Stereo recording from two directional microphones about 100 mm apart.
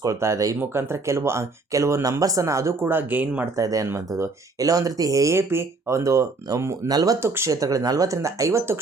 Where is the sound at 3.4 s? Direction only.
35° right (ahead or behind).